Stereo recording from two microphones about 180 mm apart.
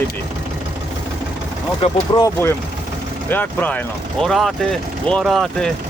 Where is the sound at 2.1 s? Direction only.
20° left (ahead or behind).